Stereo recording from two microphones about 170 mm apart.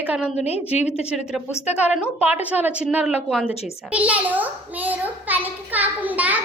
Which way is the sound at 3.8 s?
10° right (ahead or behind).